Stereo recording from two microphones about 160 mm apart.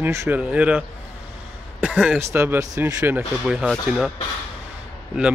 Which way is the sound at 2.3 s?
15° right (ahead or behind).